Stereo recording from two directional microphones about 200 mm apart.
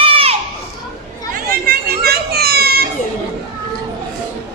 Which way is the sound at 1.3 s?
50° right (ahead or behind).